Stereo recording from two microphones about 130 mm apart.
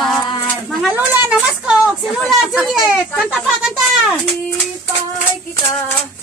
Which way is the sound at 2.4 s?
5° right (ahead or behind).